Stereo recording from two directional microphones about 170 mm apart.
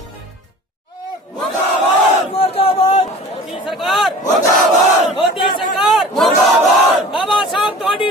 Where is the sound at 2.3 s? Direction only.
35° left (ahead or behind).